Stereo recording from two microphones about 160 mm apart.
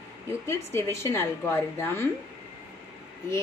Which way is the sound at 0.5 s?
15° left (ahead or behind).